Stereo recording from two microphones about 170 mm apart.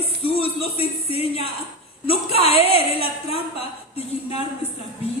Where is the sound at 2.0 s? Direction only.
35° left (ahead or behind).